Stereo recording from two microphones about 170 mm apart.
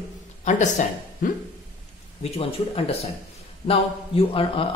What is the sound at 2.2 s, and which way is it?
A man's voice, 35° left (ahead or behind).